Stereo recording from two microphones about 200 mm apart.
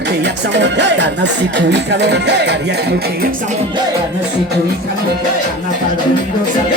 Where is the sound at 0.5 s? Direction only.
60° right (ahead or behind).